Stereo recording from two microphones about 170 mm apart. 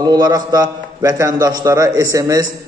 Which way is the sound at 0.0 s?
20° right (ahead or behind).